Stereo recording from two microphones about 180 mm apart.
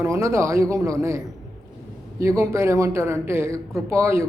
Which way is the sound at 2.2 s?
15° right (ahead or behind).